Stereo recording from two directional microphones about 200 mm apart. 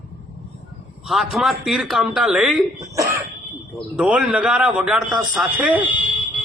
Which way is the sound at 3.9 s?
5° right (ahead or behind).